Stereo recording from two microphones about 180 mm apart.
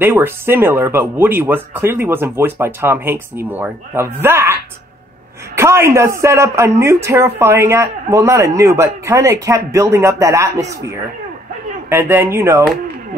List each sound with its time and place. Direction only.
0.0 s speech: 10° right (ahead or behind)
5.6 s speech: 15° right (ahead or behind)
11.9 s speech: 10° right (ahead or behind)